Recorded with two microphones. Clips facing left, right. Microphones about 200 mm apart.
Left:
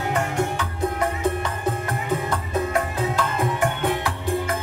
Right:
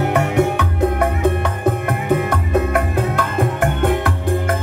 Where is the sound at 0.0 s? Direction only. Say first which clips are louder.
Right 7 dB; 65° right (ahead or behind).